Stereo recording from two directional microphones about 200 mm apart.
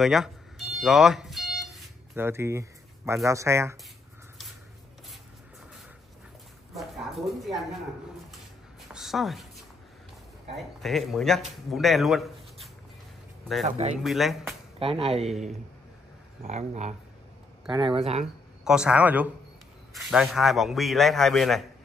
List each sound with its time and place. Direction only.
0.0 s a sound: centre (ahead or behind)
0.7 s alarm clock: centre (ahead or behind)
2.1 s speech: 10° right (ahead or behind)
6.7 s a sound: centre (ahead or behind)
8.9 s a sound: centre (ahead or behind)
10.5 s speech: centre (ahead or behind)
13.7 s speech: 35° right (ahead or behind)
13.9 s speech: centre (ahead or behind)
14.8 s speech: 30° right (ahead or behind)
16.4 s speech: 35° right (ahead or behind)
17.6 s speech: 25° right (ahead or behind)
18.2 s speech: 5° right (ahead or behind)